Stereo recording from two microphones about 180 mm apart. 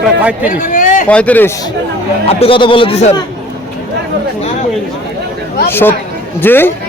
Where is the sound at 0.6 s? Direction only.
45° left (ahead or behind).